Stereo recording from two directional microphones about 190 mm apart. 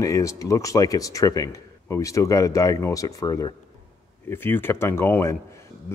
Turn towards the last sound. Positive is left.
turn(degrees=15)  # may be behind; listen again after turning